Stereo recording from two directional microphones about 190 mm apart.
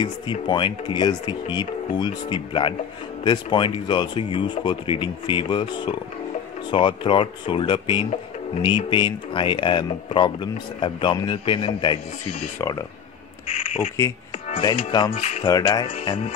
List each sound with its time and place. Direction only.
0.0 s speech: 25° left (ahead or behind)
13.5 s speech: 35° left (ahead or behind)
15.1 s speech: 35° left (ahead or behind)
15.4 s speech: 20° left (ahead or behind)